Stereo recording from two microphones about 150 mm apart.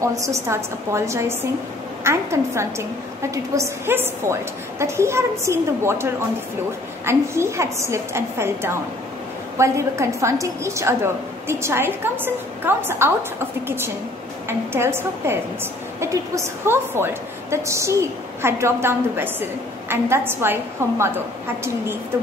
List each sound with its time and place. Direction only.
0.0 s a woman's voice: 20° right (ahead or behind)
14.7 s a woman's voice: 15° right (ahead or behind)